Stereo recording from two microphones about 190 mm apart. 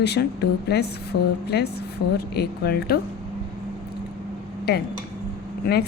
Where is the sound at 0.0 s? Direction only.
60° left (ahead or behind).